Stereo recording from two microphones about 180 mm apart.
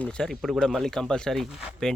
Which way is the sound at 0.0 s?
5° left (ahead or behind).